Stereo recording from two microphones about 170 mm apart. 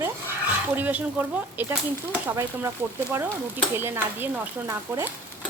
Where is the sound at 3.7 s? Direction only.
15° right (ahead or behind).